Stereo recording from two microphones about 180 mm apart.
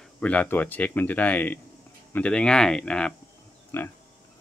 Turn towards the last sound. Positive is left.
turn(degrees=15)  # may be behind; listen again after turning